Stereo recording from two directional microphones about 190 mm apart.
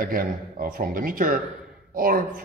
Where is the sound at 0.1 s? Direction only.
50° right (ahead or behind).